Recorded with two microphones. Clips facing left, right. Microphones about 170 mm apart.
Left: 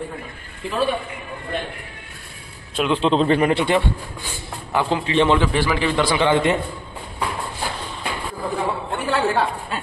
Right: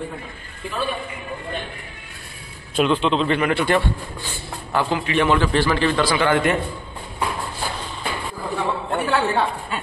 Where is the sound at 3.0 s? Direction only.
35° left (ahead or behind).